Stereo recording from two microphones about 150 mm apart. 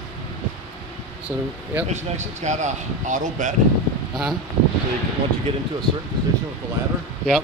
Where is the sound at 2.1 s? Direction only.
50° right (ahead or behind).